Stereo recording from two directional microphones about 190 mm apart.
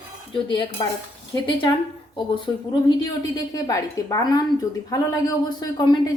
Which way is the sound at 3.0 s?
20° left (ahead or behind).